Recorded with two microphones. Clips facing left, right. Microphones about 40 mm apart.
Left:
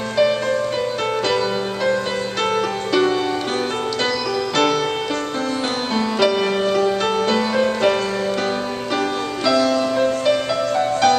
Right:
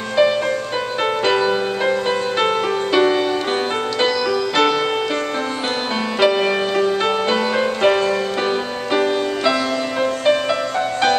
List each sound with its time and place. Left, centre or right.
0.2 s music: right
2.4 s music: right
6.1 s music: centre